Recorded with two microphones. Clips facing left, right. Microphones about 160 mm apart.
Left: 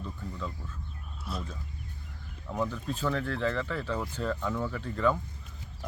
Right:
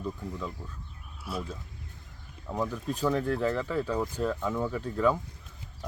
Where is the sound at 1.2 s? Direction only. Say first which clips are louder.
Right 3 dB; 5° right (ahead or behind).